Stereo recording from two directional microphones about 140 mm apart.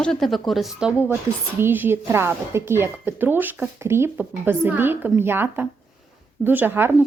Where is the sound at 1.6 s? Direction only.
15° right (ahead or behind).